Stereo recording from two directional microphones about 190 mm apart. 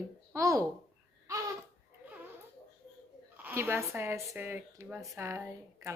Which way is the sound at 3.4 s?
10° right (ahead or behind).